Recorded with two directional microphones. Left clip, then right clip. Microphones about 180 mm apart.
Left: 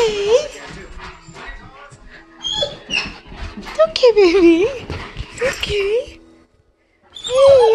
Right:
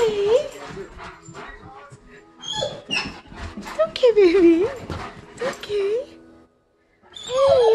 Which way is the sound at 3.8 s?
5° right (ahead or behind).